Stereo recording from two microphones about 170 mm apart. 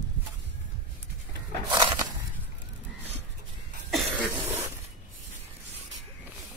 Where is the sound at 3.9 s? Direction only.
Centre (ahead or behind).